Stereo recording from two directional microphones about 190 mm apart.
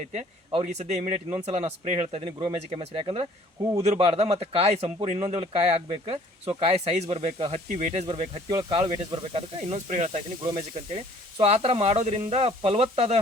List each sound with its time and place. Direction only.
0.1 s speech: 35° right (ahead or behind); by 3.8 s 20° right (ahead or behind)
3.8 s speech: 30° right (ahead or behind)